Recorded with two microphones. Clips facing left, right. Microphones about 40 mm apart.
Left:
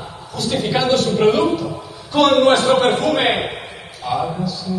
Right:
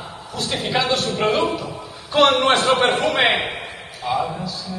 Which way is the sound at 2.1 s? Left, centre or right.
Right.